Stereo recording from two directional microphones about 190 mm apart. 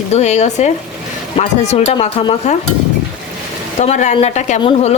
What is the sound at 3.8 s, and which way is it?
A woman's voice, 35° left (ahead or behind).